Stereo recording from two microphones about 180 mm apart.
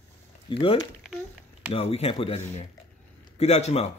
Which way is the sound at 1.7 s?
35° left (ahead or behind).